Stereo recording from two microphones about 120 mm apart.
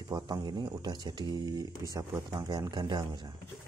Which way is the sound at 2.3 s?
35° right (ahead or behind).